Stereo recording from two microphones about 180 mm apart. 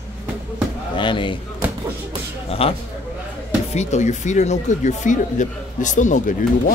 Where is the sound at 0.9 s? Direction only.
25° left (ahead or behind).